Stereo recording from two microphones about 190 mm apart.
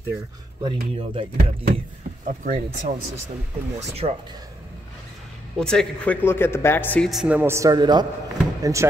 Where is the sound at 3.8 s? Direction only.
35° right (ahead or behind).